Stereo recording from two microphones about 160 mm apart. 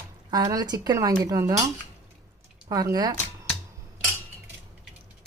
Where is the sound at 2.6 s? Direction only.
20° right (ahead or behind).